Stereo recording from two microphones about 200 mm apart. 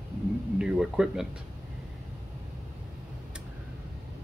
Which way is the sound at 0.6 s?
5° right (ahead or behind).